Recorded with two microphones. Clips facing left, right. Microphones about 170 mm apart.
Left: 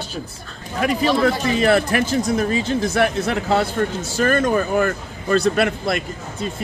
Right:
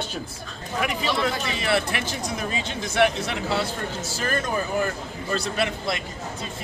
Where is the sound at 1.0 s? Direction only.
45° left (ahead or behind).